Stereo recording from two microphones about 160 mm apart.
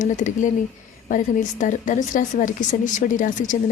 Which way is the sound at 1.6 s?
55° left (ahead or behind).